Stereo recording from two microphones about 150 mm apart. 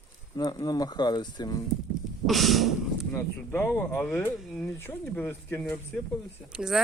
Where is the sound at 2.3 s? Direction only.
Centre (ahead or behind).